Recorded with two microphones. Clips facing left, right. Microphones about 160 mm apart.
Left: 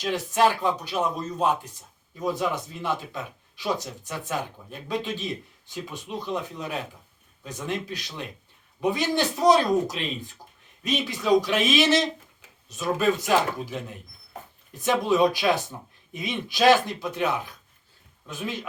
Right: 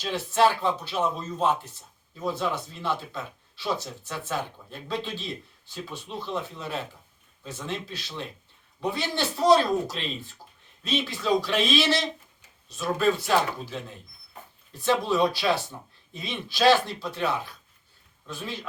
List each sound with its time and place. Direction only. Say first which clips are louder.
0.1 s speech: even; 15° left (ahead or behind)